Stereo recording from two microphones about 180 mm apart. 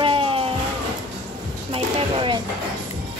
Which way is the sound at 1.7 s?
30° right (ahead or behind).